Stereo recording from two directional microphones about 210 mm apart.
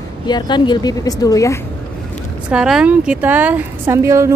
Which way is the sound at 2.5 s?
5° right (ahead or behind).